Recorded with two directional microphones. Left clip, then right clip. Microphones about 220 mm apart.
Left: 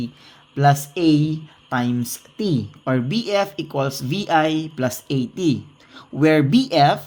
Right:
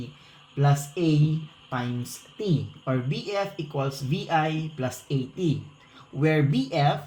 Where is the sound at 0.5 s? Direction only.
50° left (ahead or behind).